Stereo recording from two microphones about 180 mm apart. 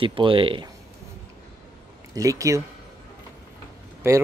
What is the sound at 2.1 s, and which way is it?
Speech, 20° right (ahead or behind).